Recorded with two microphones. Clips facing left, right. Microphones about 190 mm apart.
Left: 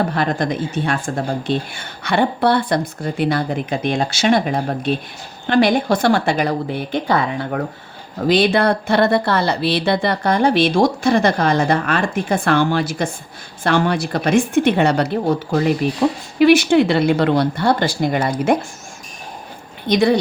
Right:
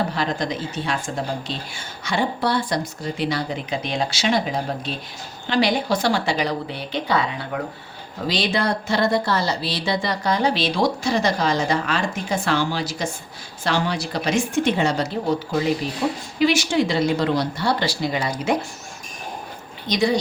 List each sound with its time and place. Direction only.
0.1 s speech: 55° left (ahead or behind)
19.9 s speech: 60° left (ahead or behind)